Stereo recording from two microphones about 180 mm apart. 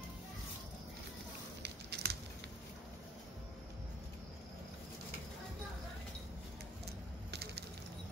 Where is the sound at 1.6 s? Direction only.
70° right (ahead or behind).